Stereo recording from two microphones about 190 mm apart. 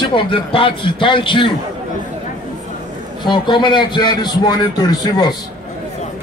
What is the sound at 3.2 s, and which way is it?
A man's voice, 25° left (ahead or behind).